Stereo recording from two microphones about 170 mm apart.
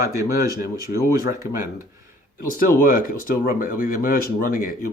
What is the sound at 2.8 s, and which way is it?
Speech, 55° left (ahead or behind).